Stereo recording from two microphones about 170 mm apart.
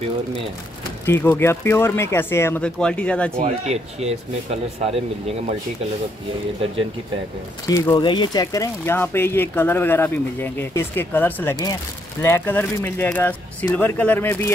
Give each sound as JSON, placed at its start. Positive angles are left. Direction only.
{"t": 1.0, "sound": "speech", "side_deg": 10}
{"t": 3.3, "sound": "speech", "side_deg": -40}
{"t": 7.6, "sound": "speech", "side_deg": 20}
{"t": 11.5, "sound": "speech", "side_deg": 20}